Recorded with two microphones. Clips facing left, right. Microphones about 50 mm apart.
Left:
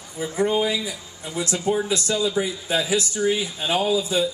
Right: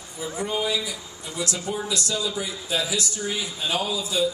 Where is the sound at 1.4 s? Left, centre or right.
Left.